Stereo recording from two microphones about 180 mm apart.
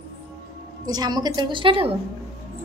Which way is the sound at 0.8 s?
20° right (ahead or behind).